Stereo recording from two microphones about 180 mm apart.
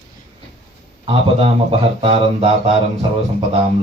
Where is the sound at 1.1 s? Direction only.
30° right (ahead or behind).